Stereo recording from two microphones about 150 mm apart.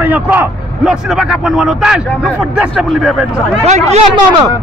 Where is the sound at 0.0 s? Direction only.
10° right (ahead or behind).